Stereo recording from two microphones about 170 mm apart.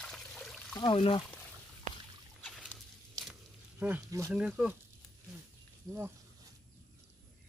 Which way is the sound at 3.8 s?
15° right (ahead or behind).